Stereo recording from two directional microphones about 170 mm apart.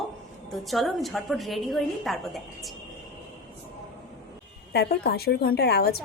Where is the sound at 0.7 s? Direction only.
Centre (ahead or behind).